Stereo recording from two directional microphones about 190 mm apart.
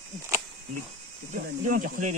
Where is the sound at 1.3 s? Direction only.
45° right (ahead or behind).